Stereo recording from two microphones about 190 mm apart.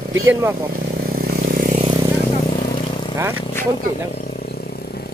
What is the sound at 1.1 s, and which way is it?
Vehicle, 50° right (ahead or behind).